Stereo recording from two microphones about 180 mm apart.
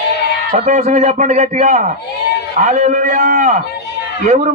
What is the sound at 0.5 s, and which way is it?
Speech, 45° right (ahead or behind).